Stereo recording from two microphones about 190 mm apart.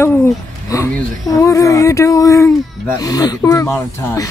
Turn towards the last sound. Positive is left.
turn(degrees=15)  # may be behind; listen again after turning